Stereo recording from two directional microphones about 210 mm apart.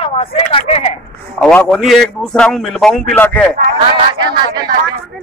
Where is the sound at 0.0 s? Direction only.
25° left (ahead or behind).